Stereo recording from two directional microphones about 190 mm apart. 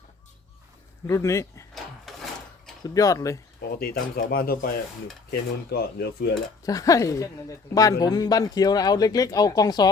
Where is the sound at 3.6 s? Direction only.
50° left (ahead or behind).